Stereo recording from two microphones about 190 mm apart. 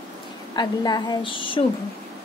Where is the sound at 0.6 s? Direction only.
20° left (ahead or behind).